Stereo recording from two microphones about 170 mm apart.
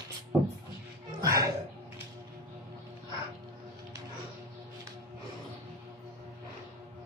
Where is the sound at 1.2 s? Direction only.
20° right (ahead or behind).